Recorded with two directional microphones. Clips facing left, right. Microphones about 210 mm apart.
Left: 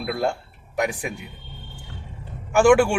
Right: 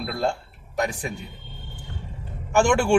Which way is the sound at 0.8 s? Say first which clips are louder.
Left 1 dB; 10° left (ahead or behind).